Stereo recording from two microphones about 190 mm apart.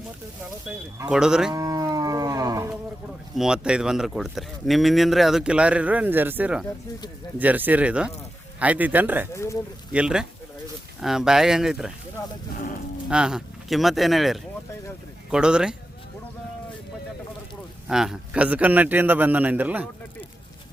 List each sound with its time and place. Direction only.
0.9 s speech: 5° right (ahead or behind)
1.5 s livestock: 20° right (ahead or behind)
3.3 s a man's voice: 5° right (ahead or behind)
9.3 s speech: 15° left (ahead or behind)
9.9 s speech: 5° right (ahead or behind)
13.1 s speech: 5° right (ahead or behind)
17.8 s a man's voice: 5° right (ahead or behind)